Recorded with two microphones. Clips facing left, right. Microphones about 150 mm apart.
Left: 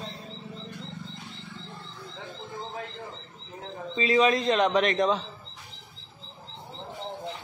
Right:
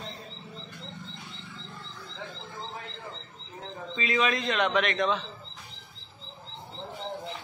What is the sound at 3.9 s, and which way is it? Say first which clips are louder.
Speech: left 5 dB; 35° left (ahead or behind).